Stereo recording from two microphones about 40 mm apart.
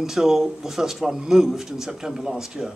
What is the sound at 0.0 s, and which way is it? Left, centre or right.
Speech, centre.